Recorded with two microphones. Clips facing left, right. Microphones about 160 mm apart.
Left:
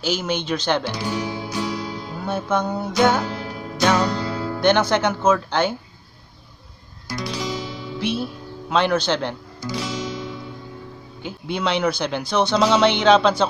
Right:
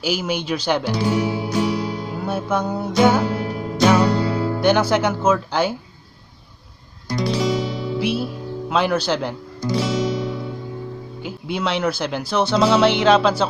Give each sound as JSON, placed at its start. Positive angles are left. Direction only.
{"t": 0.0, "sound": "music", "side_deg": -10}
{"t": 1.0, "sound": "music", "side_deg": -25}
{"t": 2.1, "sound": "music", "side_deg": -5}
{"t": 3.3, "sound": "music", "side_deg": -25}
{"t": 3.8, "sound": "music", "side_deg": -10}
{"t": 4.6, "sound": "speech", "side_deg": -5}
{"t": 7.3, "sound": "music", "side_deg": -30}
{"t": 8.0, "sound": "speech", "side_deg": -5}
{"t": 9.8, "sound": "music", "side_deg": -30}
{"t": 11.2, "sound": "speech", "side_deg": -5}